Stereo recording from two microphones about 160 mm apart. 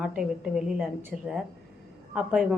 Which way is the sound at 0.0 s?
5° right (ahead or behind).